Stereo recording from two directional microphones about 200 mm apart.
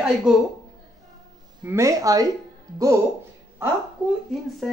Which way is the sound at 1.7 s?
15° right (ahead or behind).